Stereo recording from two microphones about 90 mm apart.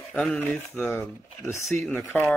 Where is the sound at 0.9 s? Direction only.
30° left (ahead or behind).